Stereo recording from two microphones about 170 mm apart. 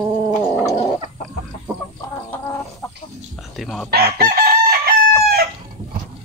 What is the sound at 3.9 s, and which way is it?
Chicken, 60° right (ahead or behind).